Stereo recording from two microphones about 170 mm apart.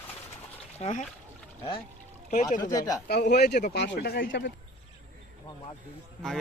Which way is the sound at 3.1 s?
75° left (ahead or behind).